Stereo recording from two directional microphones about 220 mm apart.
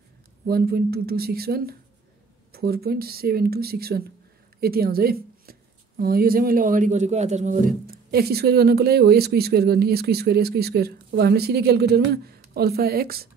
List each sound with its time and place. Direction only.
0.5 s a woman's voice: 45° right (ahead or behind)